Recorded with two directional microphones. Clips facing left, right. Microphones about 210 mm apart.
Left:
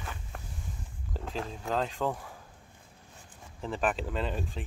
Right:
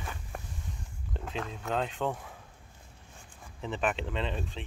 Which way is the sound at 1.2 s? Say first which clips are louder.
Left 1 dB; centre (ahead or behind).